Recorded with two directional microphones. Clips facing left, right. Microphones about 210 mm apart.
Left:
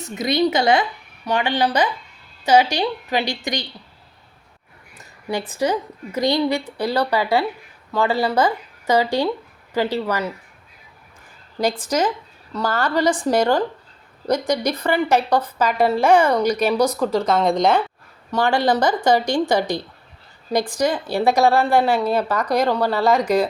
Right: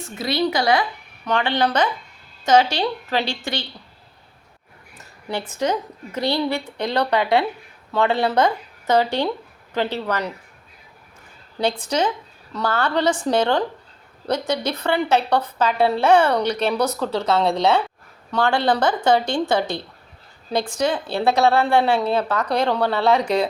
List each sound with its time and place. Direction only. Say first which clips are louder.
0.2 s speech: left 3 dB; 20° left (ahead or behind)
1.2 s speech: even; 10° left (ahead or behind)
5.6 s speech: left 1 dB; 10° left (ahead or behind)
6.8 s a woman's voice: even; 5° left (ahead or behind)
11.9 s speech: left 1 dB; 5° left (ahead or behind)